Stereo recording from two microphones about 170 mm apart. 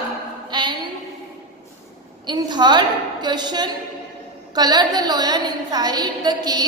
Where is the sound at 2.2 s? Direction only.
25° right (ahead or behind).